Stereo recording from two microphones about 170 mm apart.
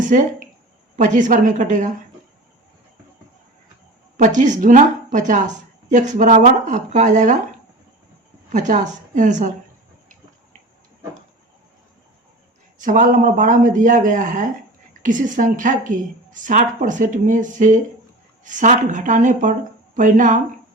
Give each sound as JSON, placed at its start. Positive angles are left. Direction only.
{"t": 0.0, "sound": "a woman's voice", "side_deg": -50}
{"t": 4.2, "sound": "a woman's voice", "side_deg": -45}
{"t": 8.4, "sound": "a woman's voice", "side_deg": -45}
{"t": 12.8, "sound": "a woman's voice", "side_deg": -50}